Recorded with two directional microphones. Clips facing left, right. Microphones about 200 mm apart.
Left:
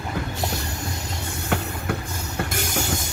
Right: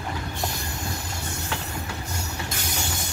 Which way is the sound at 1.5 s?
55° left (ahead or behind).